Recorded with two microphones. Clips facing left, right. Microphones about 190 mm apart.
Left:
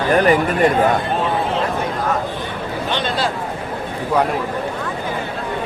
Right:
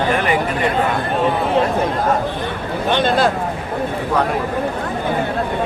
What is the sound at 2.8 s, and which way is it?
Speech, 55° right (ahead or behind).